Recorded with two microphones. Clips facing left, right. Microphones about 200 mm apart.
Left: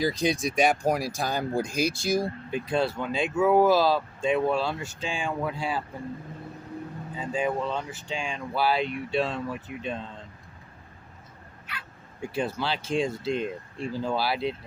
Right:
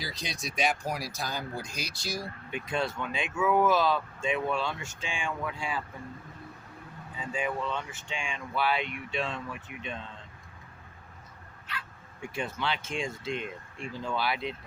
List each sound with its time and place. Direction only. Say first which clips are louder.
0.0 s speech: left 13 dB; 50° left (ahead or behind)
2.2 s speech: left 7 dB; 35° left (ahead or behind)
7.2 s speech: left 5 dB; 35° left (ahead or behind)
12.3 s speech: left 4 dB; 35° left (ahead or behind)